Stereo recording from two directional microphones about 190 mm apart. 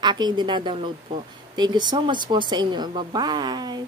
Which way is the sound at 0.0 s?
25° right (ahead or behind).